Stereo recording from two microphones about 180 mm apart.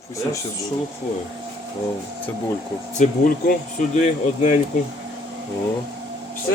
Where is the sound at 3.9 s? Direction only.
40° left (ahead or behind).